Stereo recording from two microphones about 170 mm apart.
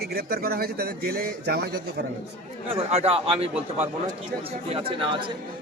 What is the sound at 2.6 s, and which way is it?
Speech, 35° right (ahead or behind).